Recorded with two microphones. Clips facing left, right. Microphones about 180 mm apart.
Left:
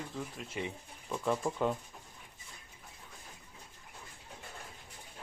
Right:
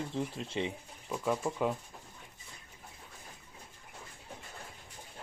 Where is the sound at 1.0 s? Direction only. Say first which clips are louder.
Even; 5° right (ahead or behind).